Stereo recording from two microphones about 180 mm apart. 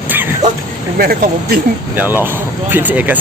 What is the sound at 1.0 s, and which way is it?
Speech, 55° right (ahead or behind).